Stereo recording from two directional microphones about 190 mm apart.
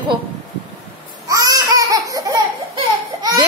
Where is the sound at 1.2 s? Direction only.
20° right (ahead or behind).